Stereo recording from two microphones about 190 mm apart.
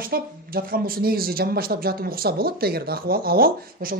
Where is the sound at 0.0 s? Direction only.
50° right (ahead or behind).